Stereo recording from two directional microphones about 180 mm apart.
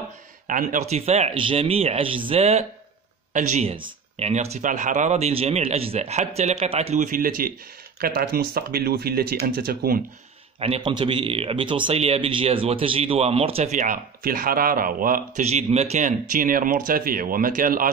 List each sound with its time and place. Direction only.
0.5 s a man's voice: 45° right (ahead or behind)
10.6 s a man's voice: 30° right (ahead or behind); by 15.4 s 50° right (ahead or behind)
15.4 s speech: 35° right (ahead or behind)